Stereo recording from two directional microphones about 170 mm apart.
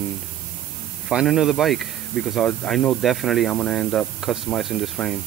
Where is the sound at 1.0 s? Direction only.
Centre (ahead or behind).